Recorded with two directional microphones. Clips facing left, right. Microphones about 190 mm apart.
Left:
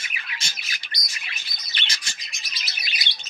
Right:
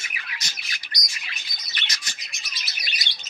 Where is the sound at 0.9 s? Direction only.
25° left (ahead or behind).